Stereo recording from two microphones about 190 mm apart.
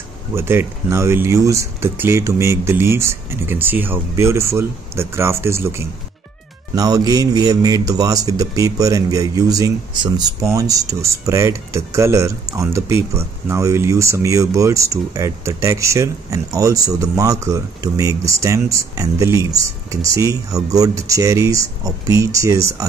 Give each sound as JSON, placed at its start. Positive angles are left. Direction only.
{"t": 0.3, "sound": "a man's voice", "side_deg": -10}